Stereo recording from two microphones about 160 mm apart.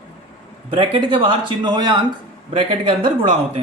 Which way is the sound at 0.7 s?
35° right (ahead or behind).